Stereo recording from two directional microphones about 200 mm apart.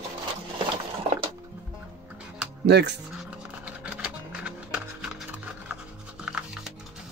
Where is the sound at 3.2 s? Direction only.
5° right (ahead or behind).